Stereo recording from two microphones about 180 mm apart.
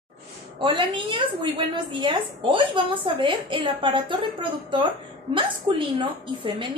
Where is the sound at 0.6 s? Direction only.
30° right (ahead or behind).